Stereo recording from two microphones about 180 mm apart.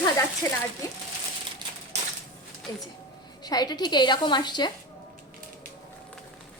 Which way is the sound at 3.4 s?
20° left (ahead or behind).